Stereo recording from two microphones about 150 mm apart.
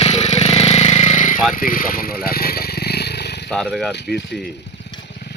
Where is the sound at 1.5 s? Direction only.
70° left (ahead or behind); by 3.5 s 90° left.